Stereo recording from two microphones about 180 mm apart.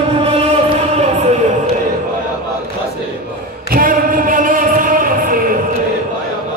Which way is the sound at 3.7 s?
50° right (ahead or behind).